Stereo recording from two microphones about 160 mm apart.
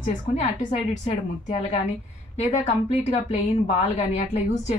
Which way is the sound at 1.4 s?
45° left (ahead or behind).